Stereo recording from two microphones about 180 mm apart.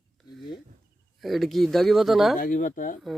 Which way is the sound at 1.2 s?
Centre (ahead or behind).